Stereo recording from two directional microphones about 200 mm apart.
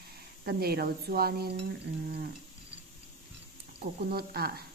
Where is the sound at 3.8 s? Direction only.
50° right (ahead or behind).